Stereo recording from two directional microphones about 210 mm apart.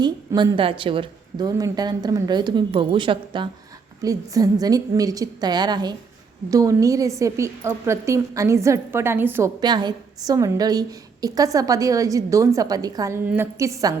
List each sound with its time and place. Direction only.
0.0 s a woman's voice: 15° right (ahead or behind)